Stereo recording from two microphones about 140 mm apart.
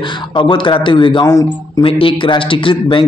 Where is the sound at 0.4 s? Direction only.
35° left (ahead or behind).